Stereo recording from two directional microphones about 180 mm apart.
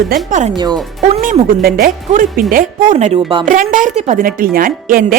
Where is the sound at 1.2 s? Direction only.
50° right (ahead or behind); by 3.4 s 35° right (ahead or behind).